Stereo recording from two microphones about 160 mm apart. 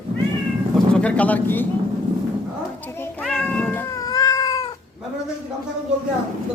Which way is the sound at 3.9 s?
20° left (ahead or behind).